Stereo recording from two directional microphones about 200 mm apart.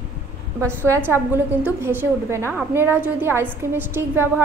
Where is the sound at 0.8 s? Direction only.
15° right (ahead or behind).